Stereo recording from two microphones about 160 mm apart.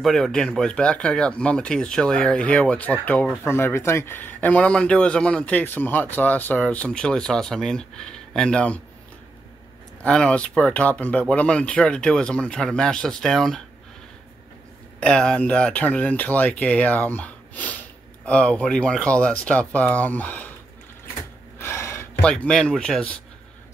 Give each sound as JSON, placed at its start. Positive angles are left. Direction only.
{"t": 0.0, "sound": "speech", "side_deg": 5}
{"t": 10.0, "sound": "speech", "side_deg": 5}
{"t": 15.0, "sound": "speech", "side_deg": 5}
{"t": 21.5, "sound": "gasp", "side_deg": 15}
{"t": 22.2, "sound": "speech", "side_deg": 5}